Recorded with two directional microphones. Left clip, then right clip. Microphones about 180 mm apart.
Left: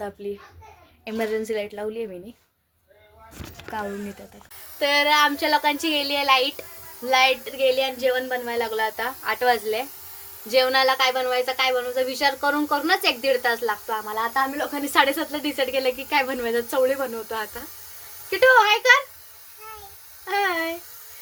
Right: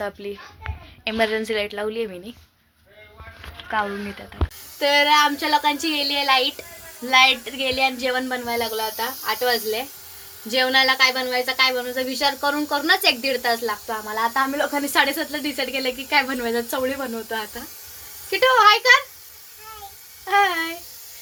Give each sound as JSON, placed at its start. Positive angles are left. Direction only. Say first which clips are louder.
{"t": 0.2, "sound": "a woman's voice", "louder": "even", "side_deg": -30}
{"t": 1.0, "sound": "a woman's voice", "louder": "right 4 dB", "side_deg": 5}
{"t": 4.8, "sound": "a woman's voice", "louder": "right 2 dB", "side_deg": 0}
{"t": 7.4, "sound": "a woman's voice", "louder": "even", "side_deg": -20}
{"t": 8.4, "sound": "a woman's voice", "louder": "even", "side_deg": 5}
{"t": 10.5, "sound": "a woman's voice", "louder": "right 1 dB", "side_deg": -5}
{"t": 20.2, "sound": "speech", "louder": "right 4 dB", "side_deg": -10}